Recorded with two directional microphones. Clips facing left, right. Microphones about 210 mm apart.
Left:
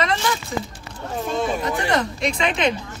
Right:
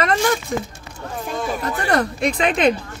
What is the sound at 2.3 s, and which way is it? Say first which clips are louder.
Speech: right 4 dB; 35° right (ahead or behind).